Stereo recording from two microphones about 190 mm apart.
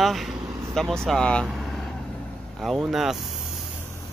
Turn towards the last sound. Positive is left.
turn(degrees=0)  # may be behind; listen again after turning